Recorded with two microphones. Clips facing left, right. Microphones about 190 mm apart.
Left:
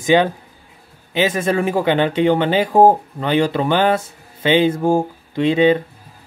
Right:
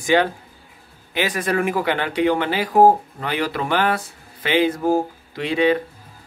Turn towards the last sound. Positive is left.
turn(degrees=25)  # may be behind; listen again after turning